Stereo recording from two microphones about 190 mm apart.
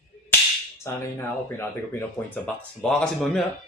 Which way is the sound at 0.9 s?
15° left (ahead or behind).